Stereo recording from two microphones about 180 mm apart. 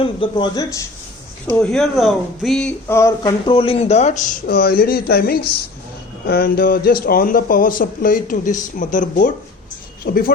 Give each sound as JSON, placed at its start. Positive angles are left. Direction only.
{"t": 0.0, "sound": "speech", "side_deg": 30}
{"t": 1.5, "sound": "speech", "side_deg": 5}
{"t": 3.2, "sound": "speech", "side_deg": 30}
{"t": 4.4, "sound": "speech", "side_deg": 60}